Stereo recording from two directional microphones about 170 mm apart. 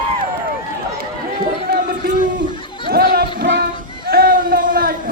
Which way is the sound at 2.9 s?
65° right (ahead or behind).